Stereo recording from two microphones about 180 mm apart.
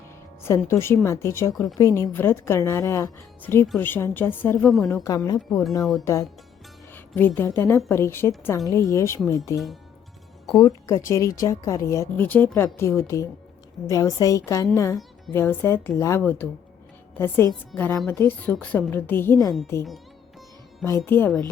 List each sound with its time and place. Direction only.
0.4 s a woman's voice: 15° left (ahead or behind)
5.5 s speech: 5° left (ahead or behind)
6.9 s a woman's voice: 10° left (ahead or behind)
10.6 s a woman's voice: 20° left (ahead or behind)
20.8 s a woman's voice: 15° left (ahead or behind)